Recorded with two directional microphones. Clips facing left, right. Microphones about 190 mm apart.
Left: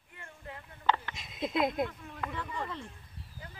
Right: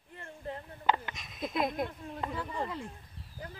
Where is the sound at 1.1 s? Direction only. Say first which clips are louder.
Left 2 dB; 25° left (ahead or behind).